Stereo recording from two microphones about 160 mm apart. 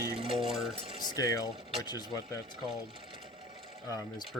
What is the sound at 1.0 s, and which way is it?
Speech, 20° left (ahead or behind).